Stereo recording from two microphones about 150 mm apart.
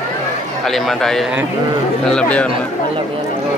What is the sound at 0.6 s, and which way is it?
A man's voice, centre (ahead or behind).